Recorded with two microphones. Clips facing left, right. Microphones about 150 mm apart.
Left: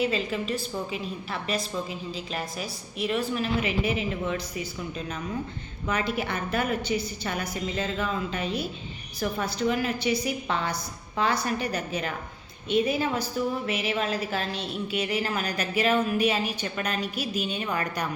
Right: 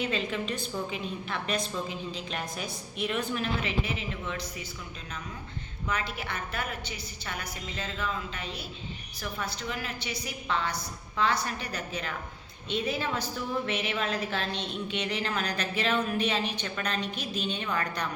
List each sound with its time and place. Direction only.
0.0 s a woman's voice: 5° left (ahead or behind)
5.9 s a woman's voice: 10° left (ahead or behind)
13.8 s a woman's voice: 30° left (ahead or behind)
14.5 s a woman's voice: 5° left (ahead or behind)